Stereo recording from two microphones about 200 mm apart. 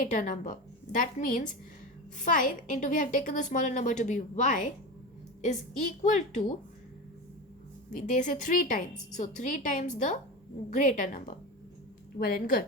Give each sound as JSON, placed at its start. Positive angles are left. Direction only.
{"t": 0.0, "sound": "a woman's voice", "side_deg": 40}
{"t": 7.9, "sound": "a woman's voice", "side_deg": 40}